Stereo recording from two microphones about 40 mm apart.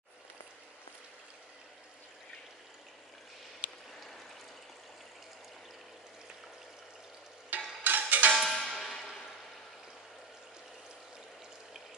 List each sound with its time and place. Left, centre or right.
7.4 s stir: right
8.4 s cowbell: centre